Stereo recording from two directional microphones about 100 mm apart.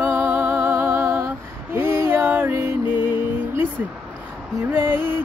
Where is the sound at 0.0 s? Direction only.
20° right (ahead or behind).